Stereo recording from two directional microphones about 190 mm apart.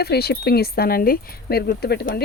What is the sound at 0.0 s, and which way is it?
Speech, 55° left (ahead or behind).